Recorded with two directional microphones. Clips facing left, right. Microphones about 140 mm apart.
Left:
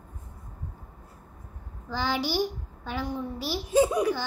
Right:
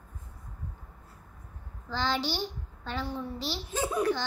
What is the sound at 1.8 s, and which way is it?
A child's voice, 10° left (ahead or behind).